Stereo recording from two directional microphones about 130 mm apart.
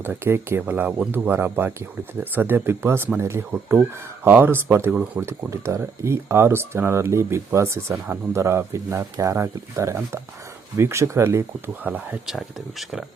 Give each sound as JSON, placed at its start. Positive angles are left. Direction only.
{"t": 0.0, "sound": "speech", "side_deg": -20}